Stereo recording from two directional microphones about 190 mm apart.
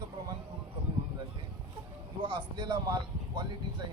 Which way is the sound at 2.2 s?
25° right (ahead or behind).